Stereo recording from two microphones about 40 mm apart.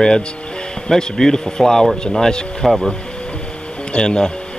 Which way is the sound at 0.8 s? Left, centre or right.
Centre.